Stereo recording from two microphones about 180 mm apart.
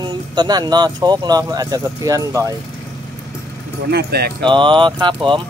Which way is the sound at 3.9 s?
60° right (ahead or behind).